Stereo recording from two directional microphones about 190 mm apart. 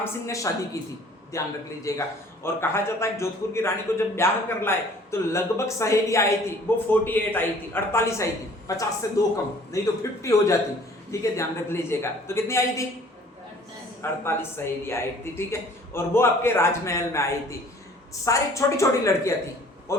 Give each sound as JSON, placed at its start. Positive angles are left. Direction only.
{"t": 0.0, "sound": "a man's voice", "side_deg": 15}
{"t": 14.0, "sound": "a man's voice", "side_deg": 15}